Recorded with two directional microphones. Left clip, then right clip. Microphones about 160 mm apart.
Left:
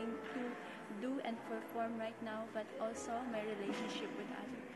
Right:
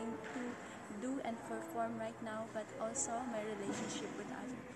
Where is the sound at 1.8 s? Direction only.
15° right (ahead or behind).